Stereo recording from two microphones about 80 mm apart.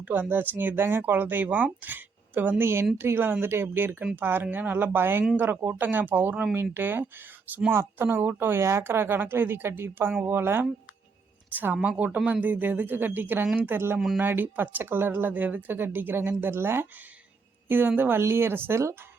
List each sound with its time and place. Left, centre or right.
0.0 s speech: right